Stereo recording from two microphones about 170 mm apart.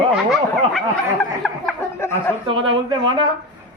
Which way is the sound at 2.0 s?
15° left (ahead or behind).